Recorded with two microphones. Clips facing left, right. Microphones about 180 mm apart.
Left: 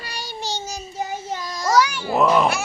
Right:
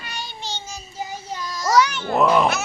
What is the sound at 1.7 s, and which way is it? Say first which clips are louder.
Speech: even; 10° left (ahead or behind).